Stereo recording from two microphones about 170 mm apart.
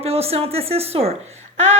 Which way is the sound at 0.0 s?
35° right (ahead or behind).